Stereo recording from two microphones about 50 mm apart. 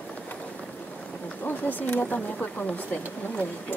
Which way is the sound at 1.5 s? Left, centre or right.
Left.